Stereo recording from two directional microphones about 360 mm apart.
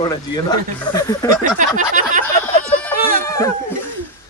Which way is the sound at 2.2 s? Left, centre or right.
Centre.